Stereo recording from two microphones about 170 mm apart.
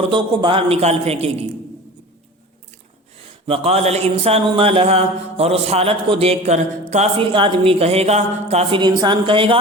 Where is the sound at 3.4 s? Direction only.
35° right (ahead or behind).